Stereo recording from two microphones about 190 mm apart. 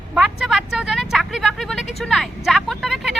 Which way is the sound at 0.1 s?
5° right (ahead or behind).